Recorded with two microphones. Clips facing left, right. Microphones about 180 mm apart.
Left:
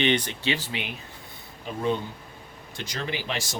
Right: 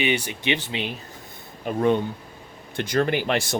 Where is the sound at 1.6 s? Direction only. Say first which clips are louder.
Right 6 dB; 55° right (ahead or behind).